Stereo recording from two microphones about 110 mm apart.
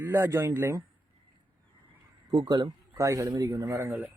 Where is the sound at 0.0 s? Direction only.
20° right (ahead or behind).